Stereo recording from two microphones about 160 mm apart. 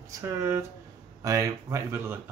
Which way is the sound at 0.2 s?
15° right (ahead or behind).